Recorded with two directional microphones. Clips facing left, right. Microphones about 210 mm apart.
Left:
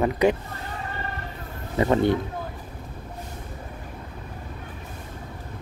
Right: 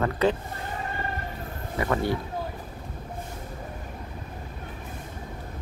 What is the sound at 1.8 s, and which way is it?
Speech, 25° left (ahead or behind).